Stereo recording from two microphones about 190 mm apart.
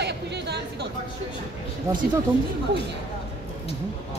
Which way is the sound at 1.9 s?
15° right (ahead or behind).